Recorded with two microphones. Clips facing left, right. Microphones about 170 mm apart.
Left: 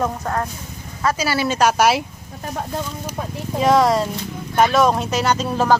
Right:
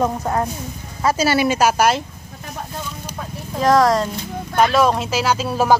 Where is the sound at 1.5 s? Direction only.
5° right (ahead or behind).